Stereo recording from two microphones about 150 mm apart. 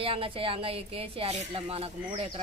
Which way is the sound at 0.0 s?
35° right (ahead or behind).